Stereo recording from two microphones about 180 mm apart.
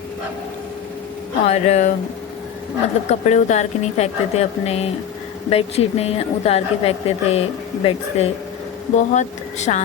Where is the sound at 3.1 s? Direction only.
40° left (ahead or behind).